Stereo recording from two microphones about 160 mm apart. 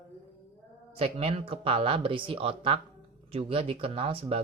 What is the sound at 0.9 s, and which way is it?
Speech, 40° right (ahead or behind).